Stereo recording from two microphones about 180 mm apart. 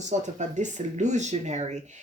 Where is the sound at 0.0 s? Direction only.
40° right (ahead or behind).